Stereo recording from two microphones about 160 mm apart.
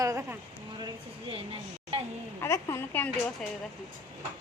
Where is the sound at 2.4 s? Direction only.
20° left (ahead or behind).